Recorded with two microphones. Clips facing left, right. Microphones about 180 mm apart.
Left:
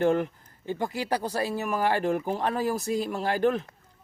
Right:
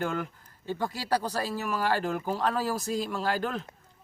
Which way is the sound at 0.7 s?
15° left (ahead or behind).